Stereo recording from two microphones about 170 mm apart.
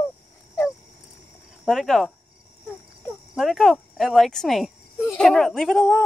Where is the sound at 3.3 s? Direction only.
Centre (ahead or behind).